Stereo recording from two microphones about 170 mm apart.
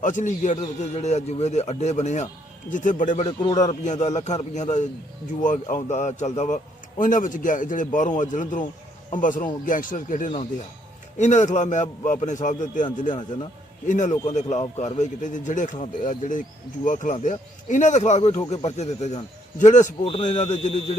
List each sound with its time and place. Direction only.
0.0 s speech: 45° left (ahead or behind)
3.4 s speech: 25° left (ahead or behind)
3.7 s speech: 40° left (ahead or behind)